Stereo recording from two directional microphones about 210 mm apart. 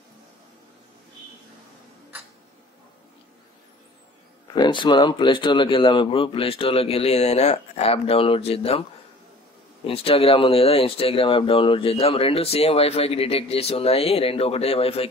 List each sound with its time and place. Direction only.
4.6 s speech: 20° left (ahead or behind)
9.8 s speech: 25° left (ahead or behind)